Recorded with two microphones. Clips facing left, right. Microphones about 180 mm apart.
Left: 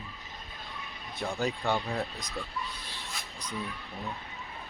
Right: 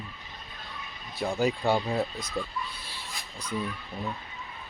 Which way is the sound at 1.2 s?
10° right (ahead or behind).